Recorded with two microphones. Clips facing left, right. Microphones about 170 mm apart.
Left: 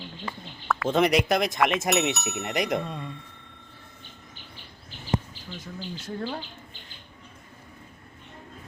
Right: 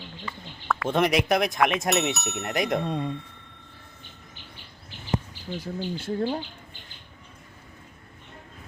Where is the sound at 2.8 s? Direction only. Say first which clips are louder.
Right 6 dB; 35° right (ahead or behind).